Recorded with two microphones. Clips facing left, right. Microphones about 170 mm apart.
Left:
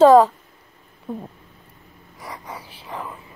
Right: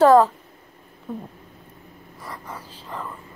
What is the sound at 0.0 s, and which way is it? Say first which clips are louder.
Speech: left 3 dB; 15° left (ahead or behind).